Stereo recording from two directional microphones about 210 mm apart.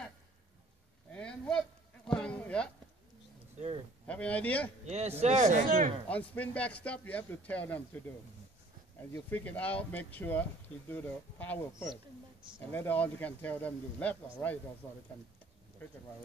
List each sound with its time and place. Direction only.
1.1 s a sound: 5° left (ahead or behind)
3.5 s speech: 30° right (ahead or behind)
4.1 s speech: 5° left (ahead or behind)
4.8 s speech: 30° right (ahead or behind)
6.0 s speech: 5° left (ahead or behind)
9.1 s speech: 10° left (ahead or behind)